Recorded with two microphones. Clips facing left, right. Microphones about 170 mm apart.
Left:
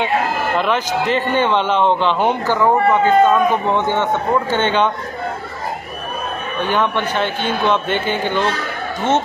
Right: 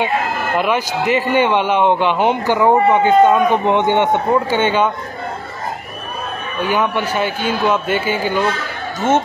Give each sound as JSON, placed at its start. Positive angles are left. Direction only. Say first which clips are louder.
{"t": 0.6, "sound": "a man's voice", "louder": "right 2 dB", "side_deg": -10}
{"t": 6.6, "sound": "a man's voice", "louder": "right 1 dB", "side_deg": -10}